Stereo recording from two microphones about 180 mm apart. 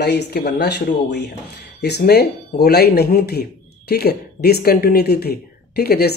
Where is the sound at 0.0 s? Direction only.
65° left (ahead or behind).